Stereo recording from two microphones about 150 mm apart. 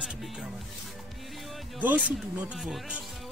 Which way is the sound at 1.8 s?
10° right (ahead or behind).